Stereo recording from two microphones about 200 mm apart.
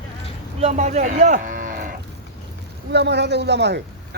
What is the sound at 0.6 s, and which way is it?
Moo, 35° right (ahead or behind).